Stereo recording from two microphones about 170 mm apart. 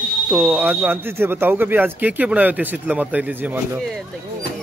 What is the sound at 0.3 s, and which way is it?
Speech, 5° right (ahead or behind).